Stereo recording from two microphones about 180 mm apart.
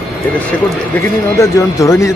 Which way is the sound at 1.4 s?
15° left (ahead or behind).